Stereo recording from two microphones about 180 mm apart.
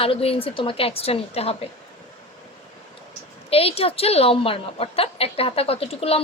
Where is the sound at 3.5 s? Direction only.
35° left (ahead or behind).